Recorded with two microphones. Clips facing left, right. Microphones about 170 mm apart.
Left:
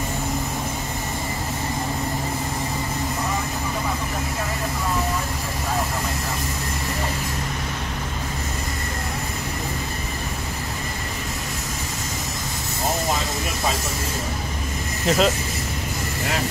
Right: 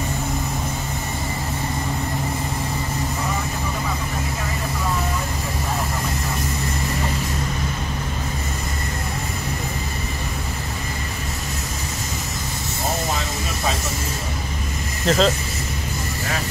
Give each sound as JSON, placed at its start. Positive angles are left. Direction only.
{"t": 15.0, "sound": "speech", "side_deg": 10}